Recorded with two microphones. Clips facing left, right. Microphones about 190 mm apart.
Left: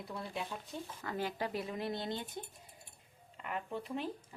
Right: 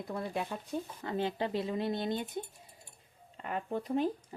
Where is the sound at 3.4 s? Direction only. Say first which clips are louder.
Right 5 dB; 35° right (ahead or behind).